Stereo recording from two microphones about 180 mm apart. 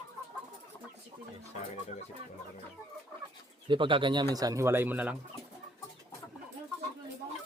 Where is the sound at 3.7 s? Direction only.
30° right (ahead or behind); by 5.2 s 10° right (ahead or behind).